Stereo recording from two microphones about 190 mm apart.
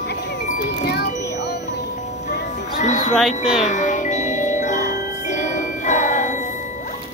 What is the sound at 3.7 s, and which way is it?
Music, 40° left (ahead or behind).